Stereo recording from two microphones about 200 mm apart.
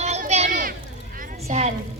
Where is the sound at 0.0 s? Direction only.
35° right (ahead or behind).